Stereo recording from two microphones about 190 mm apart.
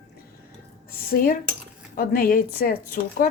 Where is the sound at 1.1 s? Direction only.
50° left (ahead or behind).